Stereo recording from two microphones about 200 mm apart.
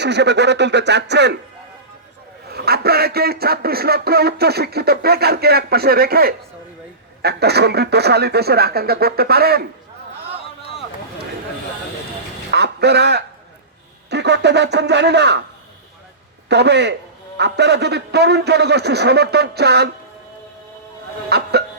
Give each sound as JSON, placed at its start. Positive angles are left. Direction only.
{"t": 0.0, "sound": "a man's voice", "side_deg": -60}
{"t": 2.5, "sound": "speech", "side_deg": -50}
{"t": 12.5, "sound": "a man's voice", "side_deg": -55}
{"t": 16.5, "sound": "a man's voice", "side_deg": -55}
{"t": 21.2, "sound": "a man's voice", "side_deg": -55}